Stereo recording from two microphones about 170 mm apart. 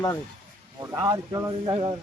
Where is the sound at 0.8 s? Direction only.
20° right (ahead or behind).